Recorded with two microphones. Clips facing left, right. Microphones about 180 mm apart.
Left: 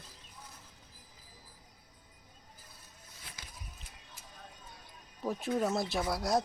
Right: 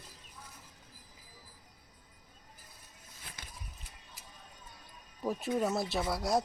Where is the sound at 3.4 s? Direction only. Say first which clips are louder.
Right 2 dB; 55° right (ahead or behind).